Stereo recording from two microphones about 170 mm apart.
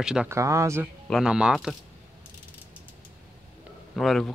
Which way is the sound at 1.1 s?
5° right (ahead or behind).